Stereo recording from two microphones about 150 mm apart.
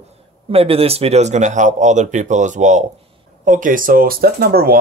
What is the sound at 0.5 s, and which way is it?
Speech, 40° right (ahead or behind).